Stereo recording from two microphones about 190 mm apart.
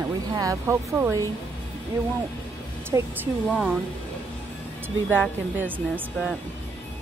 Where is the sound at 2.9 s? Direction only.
15° right (ahead or behind).